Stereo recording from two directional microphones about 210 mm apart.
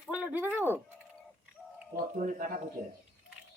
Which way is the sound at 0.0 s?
5° right (ahead or behind).